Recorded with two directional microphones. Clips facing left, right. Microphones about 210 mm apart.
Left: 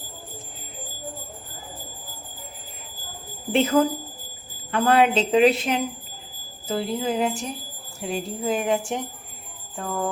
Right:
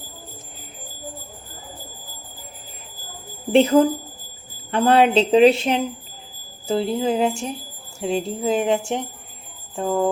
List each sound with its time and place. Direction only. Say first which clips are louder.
3.5 s speech: right 5 dB; 30° right (ahead or behind)